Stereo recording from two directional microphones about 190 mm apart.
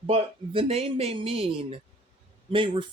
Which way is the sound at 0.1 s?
30° right (ahead or behind).